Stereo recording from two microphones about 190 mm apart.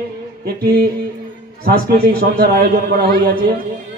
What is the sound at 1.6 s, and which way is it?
Speech, 55° right (ahead or behind).